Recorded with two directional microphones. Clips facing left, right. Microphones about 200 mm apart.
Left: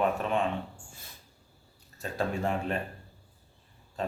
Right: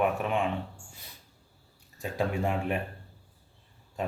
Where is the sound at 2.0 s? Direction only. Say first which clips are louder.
Right 1 dB; 15° right (ahead or behind).